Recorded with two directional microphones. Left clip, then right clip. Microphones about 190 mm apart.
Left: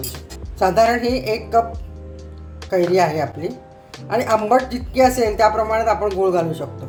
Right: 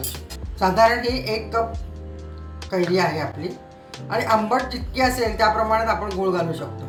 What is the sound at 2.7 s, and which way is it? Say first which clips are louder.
A woman's voice: left 5 dB; 70° left (ahead or behind).